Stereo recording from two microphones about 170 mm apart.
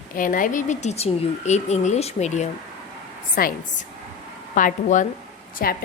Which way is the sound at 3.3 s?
55° left (ahead or behind).